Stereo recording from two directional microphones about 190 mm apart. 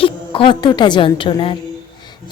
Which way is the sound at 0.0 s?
25° left (ahead or behind).